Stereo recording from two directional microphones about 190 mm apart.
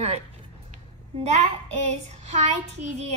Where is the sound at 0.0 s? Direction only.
35° right (ahead or behind).